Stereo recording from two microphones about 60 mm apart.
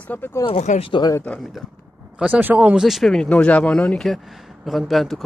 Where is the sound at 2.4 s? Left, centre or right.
Right.